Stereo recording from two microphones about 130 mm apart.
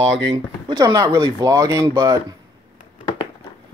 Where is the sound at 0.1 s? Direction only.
40° right (ahead or behind).